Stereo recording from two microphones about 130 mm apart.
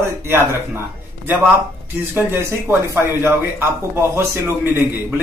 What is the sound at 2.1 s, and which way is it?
Speech, 20° right (ahead or behind).